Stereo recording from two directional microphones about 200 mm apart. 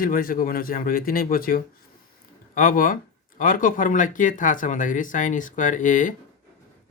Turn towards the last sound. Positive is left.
turn(degrees=40)  # may be behind; listen again after turning